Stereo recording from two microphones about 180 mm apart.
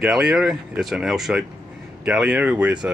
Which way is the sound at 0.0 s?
5° right (ahead or behind).